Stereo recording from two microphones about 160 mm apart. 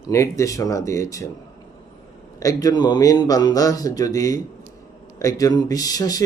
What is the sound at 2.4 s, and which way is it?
A man's voice, 20° left (ahead or behind).